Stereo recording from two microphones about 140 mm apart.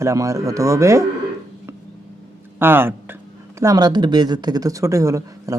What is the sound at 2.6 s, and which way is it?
Speech, 15° right (ahead or behind).